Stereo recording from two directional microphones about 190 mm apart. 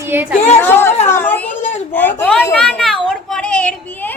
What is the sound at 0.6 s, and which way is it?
Speech, 10° left (ahead or behind).